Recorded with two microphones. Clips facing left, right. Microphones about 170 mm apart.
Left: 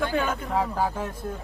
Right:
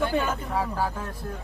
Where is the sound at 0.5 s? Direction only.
20° left (ahead or behind).